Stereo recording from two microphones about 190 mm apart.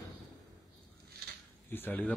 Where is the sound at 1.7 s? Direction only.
10° left (ahead or behind).